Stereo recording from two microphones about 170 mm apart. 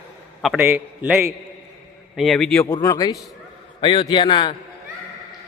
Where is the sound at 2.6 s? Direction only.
20° left (ahead or behind).